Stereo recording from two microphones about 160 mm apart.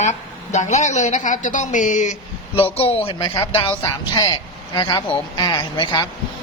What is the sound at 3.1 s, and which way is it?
A man's voice, 25° left (ahead or behind).